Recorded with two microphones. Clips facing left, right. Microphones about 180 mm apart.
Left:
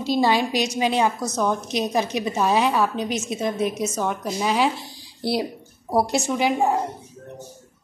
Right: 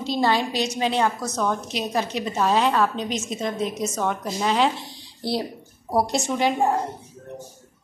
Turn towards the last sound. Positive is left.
turn(degrees=5)  # may be behind; listen again after turning